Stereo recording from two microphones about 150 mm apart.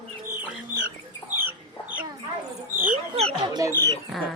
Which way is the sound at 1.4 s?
10° right (ahead or behind).